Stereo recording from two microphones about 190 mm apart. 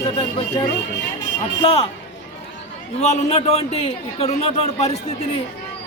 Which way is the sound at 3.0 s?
35° left (ahead or behind).